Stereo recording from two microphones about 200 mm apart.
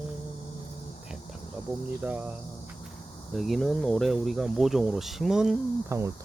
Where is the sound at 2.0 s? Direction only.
10° right (ahead or behind).